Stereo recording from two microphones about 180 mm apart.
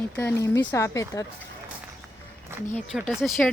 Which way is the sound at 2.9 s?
5° right (ahead or behind).